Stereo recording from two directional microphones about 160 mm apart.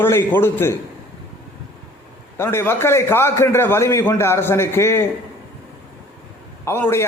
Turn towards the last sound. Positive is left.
turn(degrees=15)  # may be behind; listen again after turning